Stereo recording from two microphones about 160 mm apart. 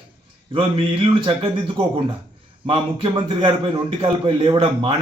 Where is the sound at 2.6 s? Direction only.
35° right (ahead or behind).